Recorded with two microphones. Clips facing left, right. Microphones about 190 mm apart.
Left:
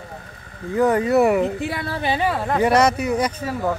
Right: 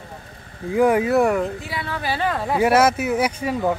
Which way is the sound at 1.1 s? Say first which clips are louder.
Left 2 dB; 5° left (ahead or behind).